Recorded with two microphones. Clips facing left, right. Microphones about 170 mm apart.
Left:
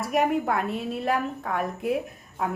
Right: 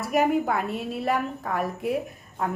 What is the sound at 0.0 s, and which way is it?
A woman's voice, centre (ahead or behind).